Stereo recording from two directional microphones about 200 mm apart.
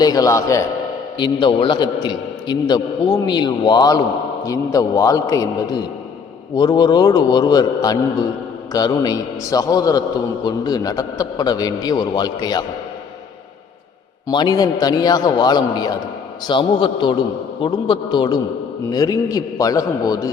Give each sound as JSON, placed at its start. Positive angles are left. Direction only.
{"t": 0.0, "sound": "a man's voice", "side_deg": 20}
{"t": 14.3, "sound": "a man's voice", "side_deg": 20}